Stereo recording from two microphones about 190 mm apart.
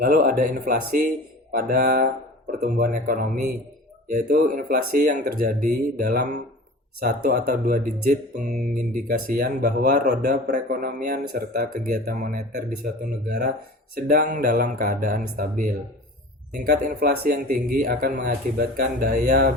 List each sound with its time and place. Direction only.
0.0 s speech: 45° right (ahead or behind)
16.6 s speech: 50° right (ahead or behind)